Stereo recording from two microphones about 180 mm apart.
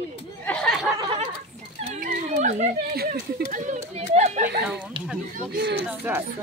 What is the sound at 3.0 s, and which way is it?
Speech, 60° right (ahead or behind).